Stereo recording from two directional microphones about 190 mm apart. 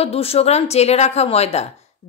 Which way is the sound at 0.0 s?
30° left (ahead or behind).